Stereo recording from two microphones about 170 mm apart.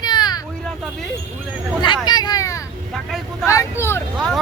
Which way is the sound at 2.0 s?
25° left (ahead or behind).